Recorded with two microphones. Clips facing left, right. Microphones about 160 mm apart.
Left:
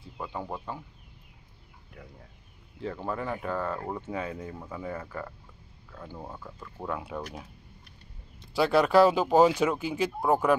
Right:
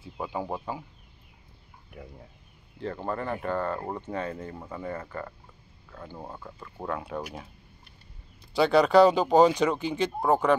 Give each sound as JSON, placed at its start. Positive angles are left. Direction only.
{"t": 0.0, "sound": "speech", "side_deg": -5}
{"t": 2.0, "sound": "speech", "side_deg": -25}
{"t": 3.1, "sound": "speech", "side_deg": 5}
{"t": 6.1, "sound": "speech", "side_deg": -10}
{"t": 6.9, "sound": "speech", "side_deg": 0}
{"t": 7.2, "sound": "speech", "side_deg": -10}
{"t": 8.4, "sound": "speech", "side_deg": 0}